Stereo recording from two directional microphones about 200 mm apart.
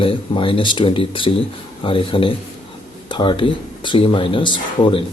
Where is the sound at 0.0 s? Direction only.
25° left (ahead or behind).